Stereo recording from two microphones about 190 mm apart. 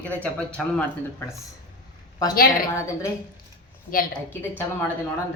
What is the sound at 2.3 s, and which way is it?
Speech, 50° left (ahead or behind).